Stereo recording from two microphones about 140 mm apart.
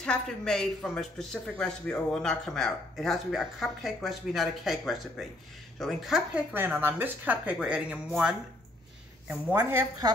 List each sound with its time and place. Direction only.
0.0 s speech: 5° left (ahead or behind); by 9.8 s 15° right (ahead or behind)